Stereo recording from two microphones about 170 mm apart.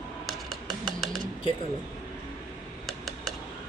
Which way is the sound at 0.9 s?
Centre (ahead or behind).